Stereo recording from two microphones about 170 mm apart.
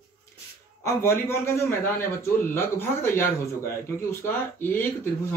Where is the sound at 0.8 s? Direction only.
15° left (ahead or behind).